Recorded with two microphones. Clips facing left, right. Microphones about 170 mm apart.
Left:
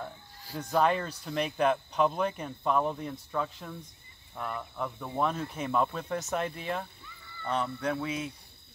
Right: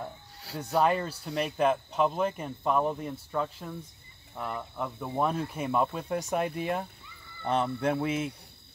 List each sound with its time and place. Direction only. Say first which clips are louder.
0.6 s speech: right 1 dB; 5° right (ahead or behind)
7.4 s fowl: right 3 dB; 25° right (ahead or behind)